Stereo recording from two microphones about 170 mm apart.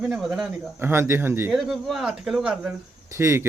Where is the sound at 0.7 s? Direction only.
15° right (ahead or behind).